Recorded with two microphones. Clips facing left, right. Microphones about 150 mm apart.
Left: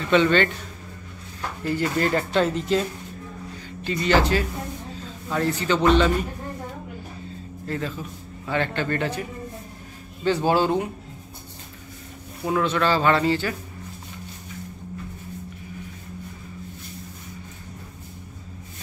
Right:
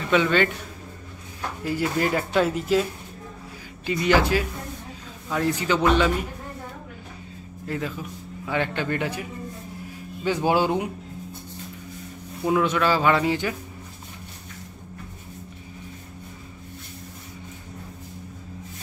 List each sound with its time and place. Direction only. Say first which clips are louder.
0.1 s speech: left 2 dB; 5° right (ahead or behind)
1.6 s speech: left 1 dB; 10° right (ahead or behind)
7.6 s a man's voice: even; 10° right (ahead or behind)
12.4 s speech: right 1 dB; 10° right (ahead or behind)